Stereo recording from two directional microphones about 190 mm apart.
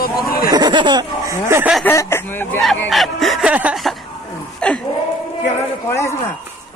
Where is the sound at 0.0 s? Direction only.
50° left (ahead or behind).